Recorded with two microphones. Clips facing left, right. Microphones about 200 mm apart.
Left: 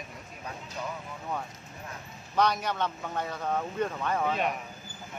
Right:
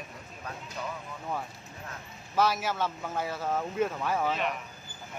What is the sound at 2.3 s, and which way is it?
Speech, 5° right (ahead or behind).